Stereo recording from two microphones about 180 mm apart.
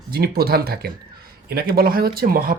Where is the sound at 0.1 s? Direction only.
60° right (ahead or behind).